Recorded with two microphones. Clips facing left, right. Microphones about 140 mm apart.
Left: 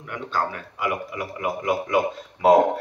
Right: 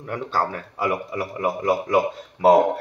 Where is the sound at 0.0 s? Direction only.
35° right (ahead or behind).